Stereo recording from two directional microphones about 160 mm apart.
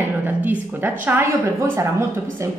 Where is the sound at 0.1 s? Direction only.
10° right (ahead or behind).